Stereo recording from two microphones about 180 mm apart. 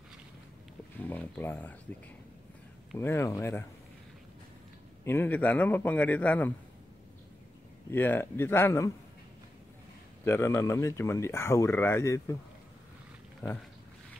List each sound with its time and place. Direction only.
1.0 s speech: 10° left (ahead or behind)
3.0 s speech: 15° left (ahead or behind)
5.0 s speech: 10° left (ahead or behind)
7.9 s speech: 10° left (ahead or behind)
10.2 s speech: 15° left (ahead or behind)
13.4 s speech: 10° left (ahead or behind)